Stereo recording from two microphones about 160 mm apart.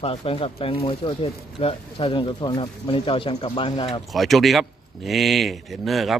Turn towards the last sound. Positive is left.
turn(degrees=0)  # may be behind; listen again after turning